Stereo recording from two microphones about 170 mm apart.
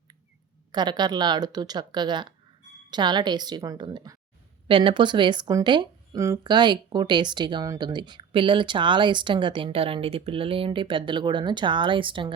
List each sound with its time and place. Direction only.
0.7 s speech: 25° right (ahead or behind)